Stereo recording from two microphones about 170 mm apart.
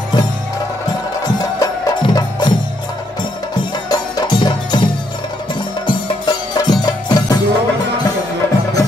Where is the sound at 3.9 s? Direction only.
25° left (ahead or behind).